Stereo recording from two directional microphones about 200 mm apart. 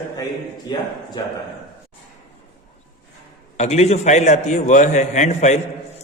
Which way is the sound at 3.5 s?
35° left (ahead or behind).